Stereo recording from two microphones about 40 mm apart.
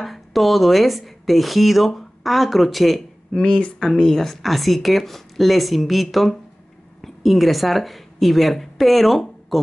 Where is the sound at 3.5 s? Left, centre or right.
Left.